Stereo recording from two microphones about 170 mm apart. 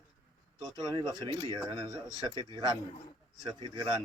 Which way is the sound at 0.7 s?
20° right (ahead or behind).